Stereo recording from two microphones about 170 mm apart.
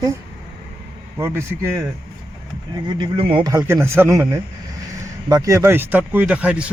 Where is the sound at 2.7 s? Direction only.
25° right (ahead or behind).